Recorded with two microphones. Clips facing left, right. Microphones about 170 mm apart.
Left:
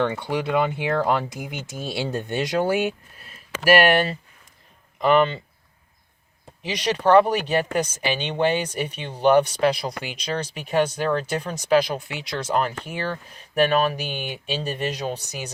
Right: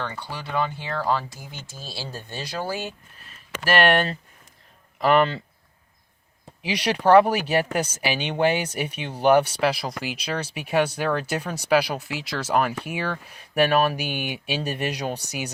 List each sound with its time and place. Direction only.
0.2 s speech: 20° left (ahead or behind)
3.6 s speech: 10° left (ahead or behind)
6.6 s speech: 10° right (ahead or behind)